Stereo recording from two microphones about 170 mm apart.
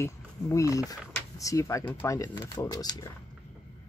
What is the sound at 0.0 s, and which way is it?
Speech, 20° left (ahead or behind).